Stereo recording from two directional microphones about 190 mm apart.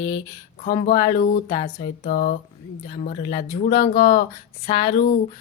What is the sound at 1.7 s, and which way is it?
Speech, 40° left (ahead or behind).